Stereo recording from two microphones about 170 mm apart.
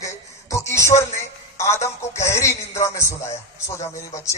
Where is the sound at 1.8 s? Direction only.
15° left (ahead or behind).